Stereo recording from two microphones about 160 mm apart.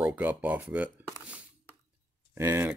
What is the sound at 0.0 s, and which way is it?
Speech, 10° right (ahead or behind).